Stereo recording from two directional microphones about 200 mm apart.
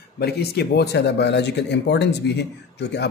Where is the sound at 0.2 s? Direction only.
55° left (ahead or behind).